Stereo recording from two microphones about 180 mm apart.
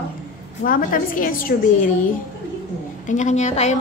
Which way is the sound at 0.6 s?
50° left (ahead or behind).